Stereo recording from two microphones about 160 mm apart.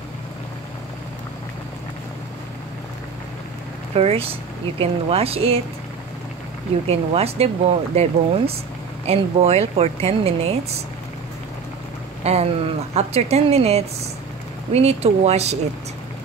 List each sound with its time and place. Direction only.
3.9 s speech: 40° right (ahead or behind)
6.9 s speech: 40° right (ahead or behind)
12.2 s speech: 40° right (ahead or behind)